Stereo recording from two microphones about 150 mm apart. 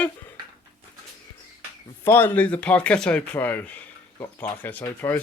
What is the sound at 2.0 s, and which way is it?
Speech, 15° left (ahead or behind).